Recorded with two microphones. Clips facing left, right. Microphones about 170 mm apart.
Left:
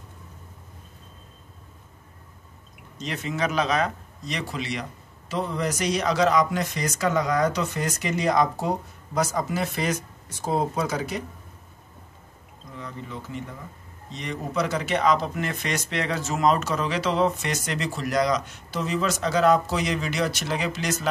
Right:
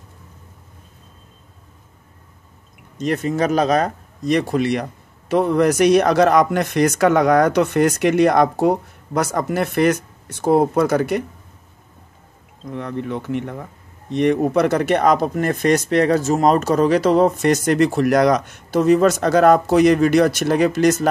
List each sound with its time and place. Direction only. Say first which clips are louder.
3.0 s speech: right 9 dB; 50° right (ahead or behind)
12.6 s speech: right 12 dB; 65° right (ahead or behind)